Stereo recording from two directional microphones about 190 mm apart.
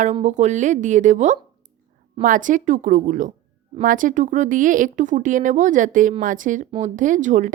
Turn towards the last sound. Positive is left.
turn(degrees=-40)  # may be behind; listen again after turning